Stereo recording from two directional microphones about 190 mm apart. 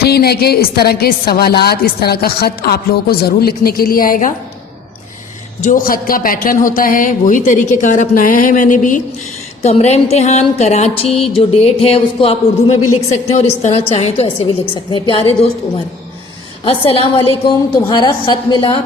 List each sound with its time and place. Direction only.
0.0 s a woman's voice: 55° left (ahead or behind)
5.6 s speech: 45° left (ahead or behind)
9.6 s music: 35° left (ahead or behind)
13.3 s a woman's voice: 35° left (ahead or behind)
16.6 s a woman's voice: 30° left (ahead or behind)